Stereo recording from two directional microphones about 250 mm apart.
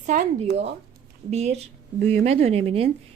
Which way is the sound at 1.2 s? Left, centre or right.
Right.